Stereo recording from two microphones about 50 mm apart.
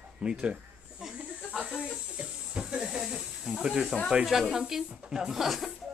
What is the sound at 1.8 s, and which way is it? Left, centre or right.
Speech, centre.